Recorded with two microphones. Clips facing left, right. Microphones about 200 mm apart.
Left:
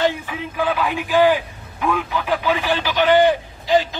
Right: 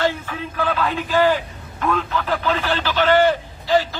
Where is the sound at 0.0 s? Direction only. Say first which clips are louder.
Left 1 dB; 15° left (ahead or behind).